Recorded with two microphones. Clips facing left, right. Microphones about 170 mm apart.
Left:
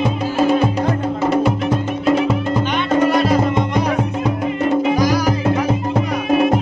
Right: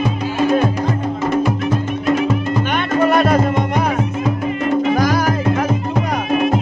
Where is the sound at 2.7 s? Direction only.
55° right (ahead or behind).